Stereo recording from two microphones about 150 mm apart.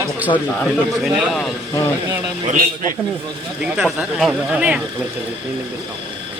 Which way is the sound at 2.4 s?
55° right (ahead or behind).